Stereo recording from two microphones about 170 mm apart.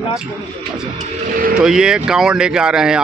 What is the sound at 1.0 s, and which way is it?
Speech, 55° right (ahead or behind).